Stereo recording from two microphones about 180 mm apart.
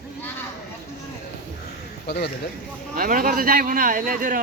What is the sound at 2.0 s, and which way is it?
Speech, 65° left (ahead or behind).